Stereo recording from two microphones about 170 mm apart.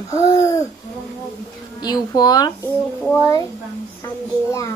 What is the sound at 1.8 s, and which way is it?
Speech, 25° left (ahead or behind).